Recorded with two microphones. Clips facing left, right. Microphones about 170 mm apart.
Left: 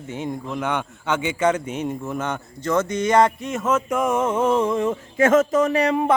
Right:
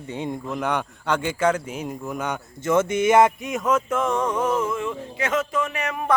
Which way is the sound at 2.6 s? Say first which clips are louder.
Right 1 dB; 25° right (ahead or behind).